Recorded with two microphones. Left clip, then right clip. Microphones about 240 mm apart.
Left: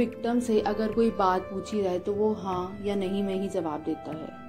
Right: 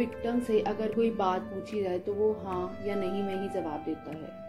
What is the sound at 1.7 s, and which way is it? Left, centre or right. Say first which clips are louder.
Speech: left 4 dB; centre.